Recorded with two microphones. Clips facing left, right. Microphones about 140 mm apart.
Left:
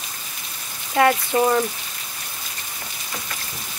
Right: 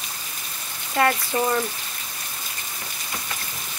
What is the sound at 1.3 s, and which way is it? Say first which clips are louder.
Speech: left 5 dB; 10° left (ahead or behind).